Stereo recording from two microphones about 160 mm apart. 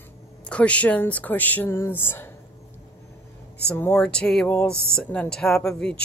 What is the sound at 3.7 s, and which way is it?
Speech, 10° left (ahead or behind).